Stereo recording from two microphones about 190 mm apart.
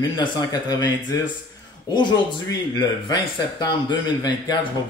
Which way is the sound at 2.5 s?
25° left (ahead or behind).